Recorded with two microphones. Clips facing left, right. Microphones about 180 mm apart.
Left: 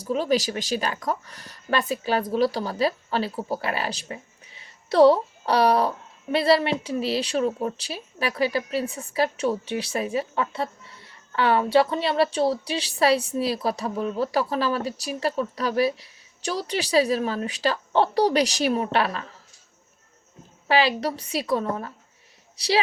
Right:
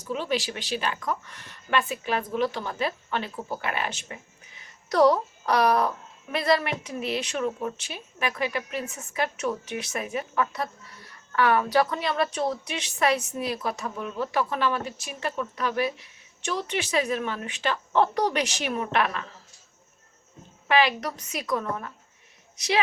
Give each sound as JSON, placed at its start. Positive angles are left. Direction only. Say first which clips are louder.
{"t": 0.0, "sound": "speech", "louder": "left 5 dB", "side_deg": 40}
{"t": 20.7, "sound": "a woman's voice", "louder": "left 2 dB", "side_deg": 30}